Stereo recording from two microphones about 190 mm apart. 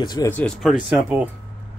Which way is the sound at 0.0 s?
20° left (ahead or behind).